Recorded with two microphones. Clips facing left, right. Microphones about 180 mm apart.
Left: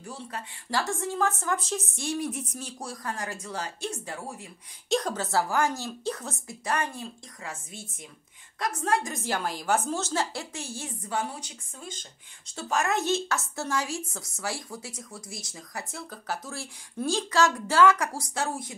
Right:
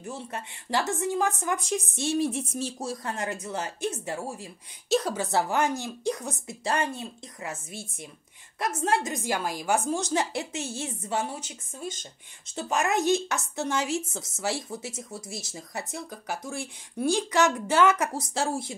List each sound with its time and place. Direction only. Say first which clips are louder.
0.1 s speech: right 2 dB; 20° right (ahead or behind)
4.8 s a woman's voice: right 2 dB; 5° right (ahead or behind)
6.6 s speech: right 2 dB; 25° right (ahead or behind)
8.5 s speech: right 1 dB; 25° right (ahead or behind)
12.5 s speech: right 1 dB; 20° right (ahead or behind)